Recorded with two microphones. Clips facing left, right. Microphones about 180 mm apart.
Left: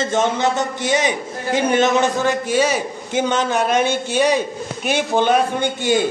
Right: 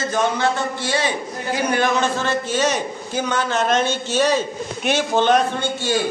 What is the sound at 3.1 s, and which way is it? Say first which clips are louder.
A woman's voice: left 3 dB; 20° left (ahead or behind).